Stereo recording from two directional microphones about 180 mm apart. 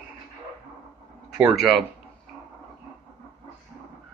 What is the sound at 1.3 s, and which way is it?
Speech, centre (ahead or behind).